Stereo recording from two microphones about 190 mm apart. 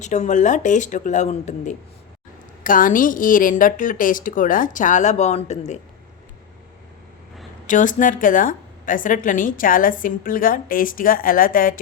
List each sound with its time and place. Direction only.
0.0 s a woman's voice: 40° left (ahead or behind)
7.7 s a woman's voice: 45° left (ahead or behind)